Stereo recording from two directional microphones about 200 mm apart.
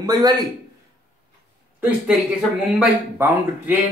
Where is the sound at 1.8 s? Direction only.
5° right (ahead or behind).